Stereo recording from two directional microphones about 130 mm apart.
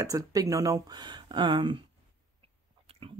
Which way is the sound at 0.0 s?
25° right (ahead or behind).